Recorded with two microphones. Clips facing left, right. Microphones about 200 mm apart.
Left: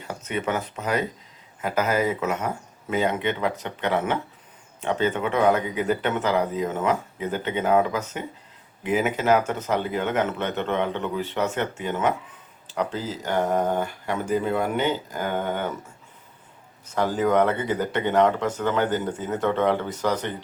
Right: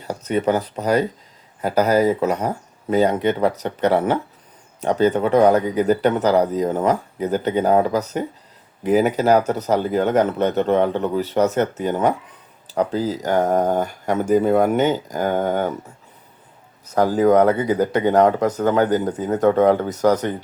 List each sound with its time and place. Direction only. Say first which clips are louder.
0.0 s speech: right 8 dB; 35° right (ahead or behind)
16.9 s speech: right 6 dB; 40° right (ahead or behind)